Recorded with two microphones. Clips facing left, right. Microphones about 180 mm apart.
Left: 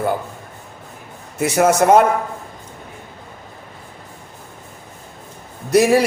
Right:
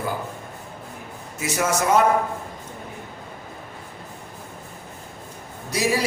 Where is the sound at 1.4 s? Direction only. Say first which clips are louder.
Left 9 dB; 60° left (ahead or behind).